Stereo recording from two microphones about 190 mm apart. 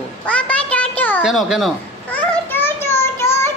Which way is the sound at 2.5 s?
10° left (ahead or behind).